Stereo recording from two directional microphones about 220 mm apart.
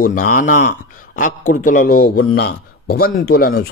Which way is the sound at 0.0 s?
40° left (ahead or behind).